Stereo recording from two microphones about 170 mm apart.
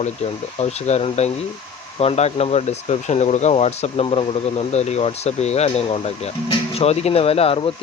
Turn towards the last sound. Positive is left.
turn(degrees=35)  # may be behind; listen again after turning